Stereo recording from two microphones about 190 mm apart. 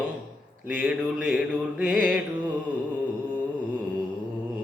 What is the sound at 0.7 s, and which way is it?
Mantra, 5° right (ahead or behind).